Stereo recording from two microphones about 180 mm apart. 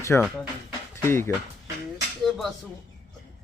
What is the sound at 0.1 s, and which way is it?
Speech, 5° left (ahead or behind).